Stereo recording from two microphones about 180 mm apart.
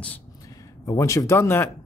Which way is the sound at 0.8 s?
15° left (ahead or behind).